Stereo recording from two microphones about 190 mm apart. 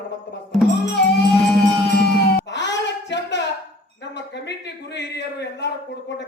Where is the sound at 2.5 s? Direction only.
70° left (ahead or behind).